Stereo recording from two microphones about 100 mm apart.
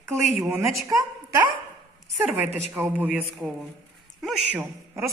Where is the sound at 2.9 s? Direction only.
15° right (ahead or behind).